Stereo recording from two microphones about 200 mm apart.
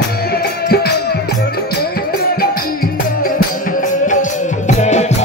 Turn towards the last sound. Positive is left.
turn(degrees=35)  # may be behind; listen again after turning